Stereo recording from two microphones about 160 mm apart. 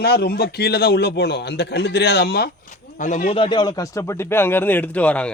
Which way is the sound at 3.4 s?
30° left (ahead or behind).